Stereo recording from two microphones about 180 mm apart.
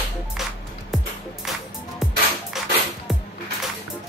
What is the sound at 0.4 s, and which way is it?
Music, centre (ahead or behind).